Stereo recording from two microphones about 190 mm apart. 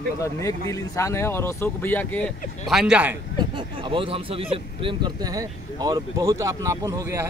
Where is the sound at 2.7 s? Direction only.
5° right (ahead or behind).